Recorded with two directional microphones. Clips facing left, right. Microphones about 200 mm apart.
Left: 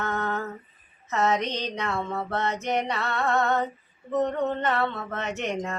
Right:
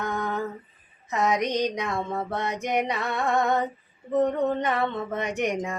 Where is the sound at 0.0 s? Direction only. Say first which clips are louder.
Right 1 dB; 15° right (ahead or behind).